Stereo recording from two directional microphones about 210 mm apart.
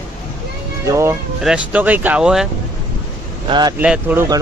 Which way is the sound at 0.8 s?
15° right (ahead or behind).